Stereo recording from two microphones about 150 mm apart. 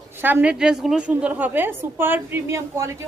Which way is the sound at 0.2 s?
15° right (ahead or behind).